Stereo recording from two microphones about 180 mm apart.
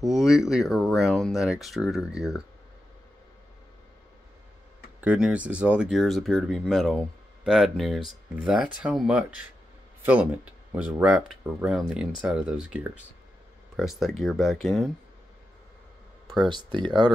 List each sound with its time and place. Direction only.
0.0 s speech: centre (ahead or behind)
5.0 s speech: 5° right (ahead or behind)
16.3 s speech: 25° right (ahead or behind)